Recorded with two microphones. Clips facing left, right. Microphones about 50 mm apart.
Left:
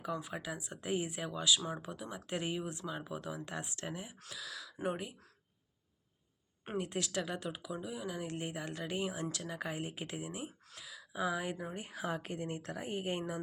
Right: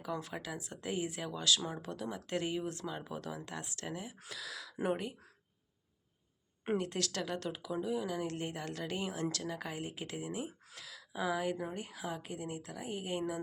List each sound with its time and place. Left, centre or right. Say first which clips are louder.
0.1 s speech: right 1 dB; centre
2.8 s speech: even; centre
3.4 s speech: left 1 dB; left
4.4 s speech: right 3 dB; centre
6.7 s speech: left 1 dB; centre
10.8 s speech: left 1 dB; centre
11.9 s a woman's voice: left 2 dB; left